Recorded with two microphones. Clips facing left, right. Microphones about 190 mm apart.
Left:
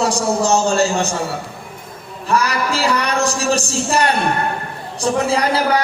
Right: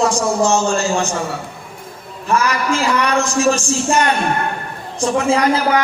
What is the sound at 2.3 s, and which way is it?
A woman's voice, 35° left (ahead or behind).